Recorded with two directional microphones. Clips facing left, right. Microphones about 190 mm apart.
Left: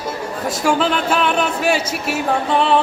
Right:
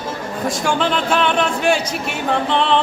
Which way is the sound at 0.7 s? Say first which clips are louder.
Left 2 dB; 5° left (ahead or behind).